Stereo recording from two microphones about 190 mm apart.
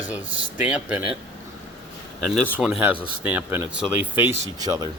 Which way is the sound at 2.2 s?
5° left (ahead or behind).